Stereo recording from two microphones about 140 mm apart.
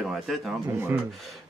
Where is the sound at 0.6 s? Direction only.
15° right (ahead or behind).